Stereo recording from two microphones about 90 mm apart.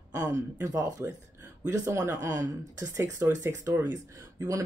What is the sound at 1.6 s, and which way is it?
Speech, 35° right (ahead or behind).